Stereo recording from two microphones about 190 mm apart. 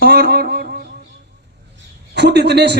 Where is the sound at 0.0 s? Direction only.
55° right (ahead or behind).